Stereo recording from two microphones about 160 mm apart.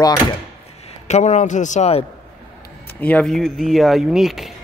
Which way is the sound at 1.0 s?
45° left (ahead or behind).